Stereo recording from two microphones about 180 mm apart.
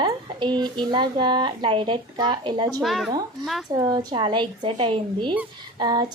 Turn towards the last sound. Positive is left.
turn(degrees=-25)  # may be behind; listen again after turning